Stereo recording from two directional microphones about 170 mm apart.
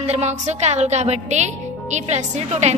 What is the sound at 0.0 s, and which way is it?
A woman's voice, 40° right (ahead or behind).